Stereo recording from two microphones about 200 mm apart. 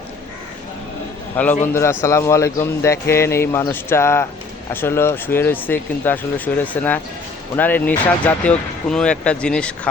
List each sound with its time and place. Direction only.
1.6 s speech: 10° left (ahead or behind)